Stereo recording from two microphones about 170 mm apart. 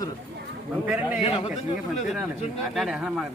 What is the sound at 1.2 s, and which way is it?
Speech, 35° left (ahead or behind).